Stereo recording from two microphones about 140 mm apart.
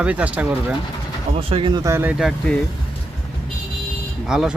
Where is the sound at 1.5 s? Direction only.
35° right (ahead or behind).